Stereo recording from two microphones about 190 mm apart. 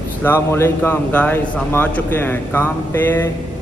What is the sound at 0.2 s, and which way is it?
Speech, 10° left (ahead or behind).